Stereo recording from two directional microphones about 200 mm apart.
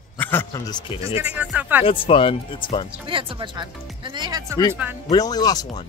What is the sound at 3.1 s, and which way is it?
Speech, 25° right (ahead or behind).